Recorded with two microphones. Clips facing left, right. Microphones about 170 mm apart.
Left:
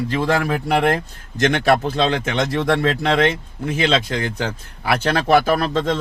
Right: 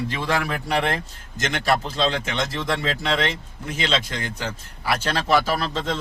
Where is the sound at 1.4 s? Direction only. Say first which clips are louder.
Left 7 dB; 60° left (ahead or behind).